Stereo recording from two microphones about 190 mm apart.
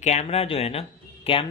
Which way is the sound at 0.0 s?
35° left (ahead or behind).